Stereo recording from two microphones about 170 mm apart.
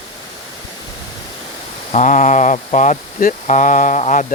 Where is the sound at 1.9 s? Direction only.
45° left (ahead or behind).